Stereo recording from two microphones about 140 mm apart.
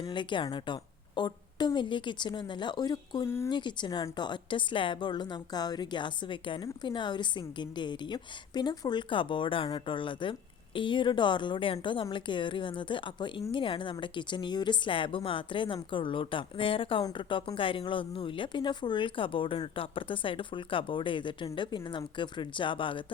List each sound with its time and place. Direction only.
0.1 s speech: 35° left (ahead or behind)
3.2 s speech: 15° left (ahead or behind)
3.5 s speech: 35° left (ahead or behind)